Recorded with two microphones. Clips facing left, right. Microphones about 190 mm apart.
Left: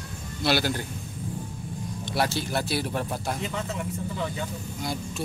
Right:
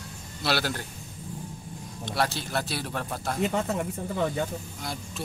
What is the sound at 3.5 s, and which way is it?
Speech, 45° right (ahead or behind).